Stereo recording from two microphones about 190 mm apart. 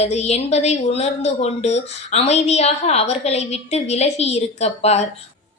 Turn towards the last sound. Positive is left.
turn(degrees=35)  # may be behind; listen again after turning